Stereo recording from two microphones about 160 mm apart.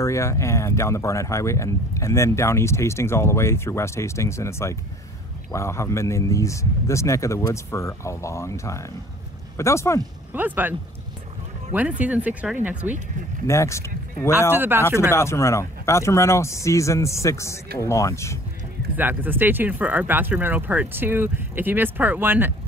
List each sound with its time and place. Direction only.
0.0 s speech: 20° left (ahead or behind)
10.3 s speech: 10° right (ahead or behind)
13.5 s speech: 20° left (ahead or behind)
14.5 s speech: 15° right (ahead or behind)
14.8 s speech: 15° left (ahead or behind)
18.9 s speech: 10° right (ahead or behind)